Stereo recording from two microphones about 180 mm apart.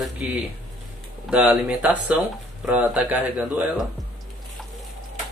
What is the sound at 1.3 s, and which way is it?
Speech, 5° right (ahead or behind).